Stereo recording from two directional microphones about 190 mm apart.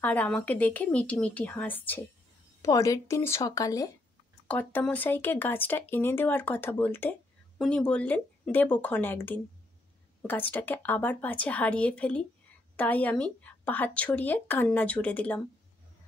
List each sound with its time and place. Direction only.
0.0 s speech: 10° left (ahead or behind)